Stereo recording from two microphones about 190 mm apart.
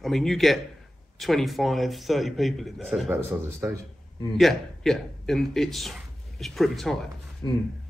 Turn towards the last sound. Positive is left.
turn(degrees=15)  # may be behind; listen again after turning